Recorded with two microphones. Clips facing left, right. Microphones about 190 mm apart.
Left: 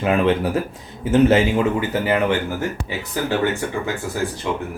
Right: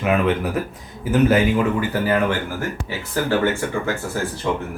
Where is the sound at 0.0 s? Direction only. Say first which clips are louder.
Left 1 dB; 30° left (ahead or behind).